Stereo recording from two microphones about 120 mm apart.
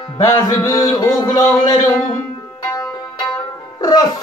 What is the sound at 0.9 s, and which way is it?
Speech, 40° left (ahead or behind).